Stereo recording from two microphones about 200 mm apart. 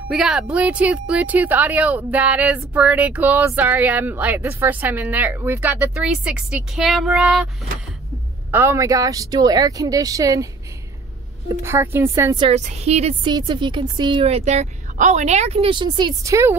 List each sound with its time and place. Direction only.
0.1 s speech: centre (ahead or behind)
8.5 s speech: 10° right (ahead or behind)
12.4 s a woman's voice: 30° right (ahead or behind); by 16.5 s 15° right (ahead or behind)